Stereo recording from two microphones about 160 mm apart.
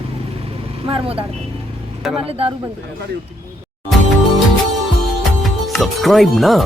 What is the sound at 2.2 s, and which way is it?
Speech, 35° right (ahead or behind).